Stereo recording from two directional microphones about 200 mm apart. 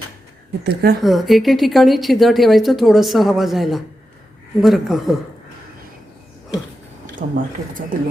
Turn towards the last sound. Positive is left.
turn(degrees=-45)  # may be behind; listen again after turning